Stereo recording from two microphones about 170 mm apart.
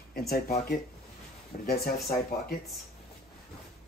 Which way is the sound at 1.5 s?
50° left (ahead or behind).